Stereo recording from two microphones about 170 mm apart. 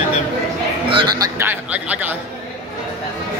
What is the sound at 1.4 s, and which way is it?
Speech, 10° right (ahead or behind).